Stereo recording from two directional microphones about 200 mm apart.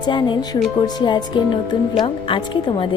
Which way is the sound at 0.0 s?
20° left (ahead or behind).